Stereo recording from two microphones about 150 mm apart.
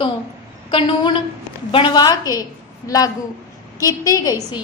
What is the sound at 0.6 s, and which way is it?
A woman's voice, 35° left (ahead or behind).